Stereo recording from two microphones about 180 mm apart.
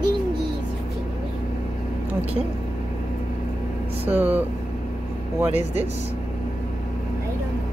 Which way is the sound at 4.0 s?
10° right (ahead or behind).